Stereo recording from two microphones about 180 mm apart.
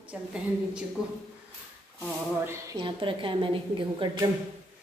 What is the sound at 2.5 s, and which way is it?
A woman's voice, 20° right (ahead or behind).